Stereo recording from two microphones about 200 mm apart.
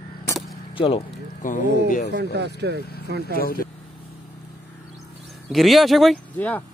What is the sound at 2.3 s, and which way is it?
Speech, 55° right (ahead or behind).